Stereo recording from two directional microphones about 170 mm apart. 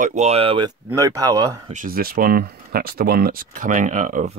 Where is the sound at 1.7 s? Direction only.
55° right (ahead or behind).